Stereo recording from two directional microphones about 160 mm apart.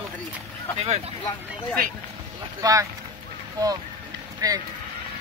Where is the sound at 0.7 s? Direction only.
40° right (ahead or behind).